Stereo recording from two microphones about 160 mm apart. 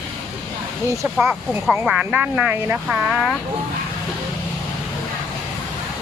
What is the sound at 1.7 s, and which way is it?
Speech, 10° right (ahead or behind).